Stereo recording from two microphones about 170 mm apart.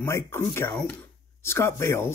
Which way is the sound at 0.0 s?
15° left (ahead or behind).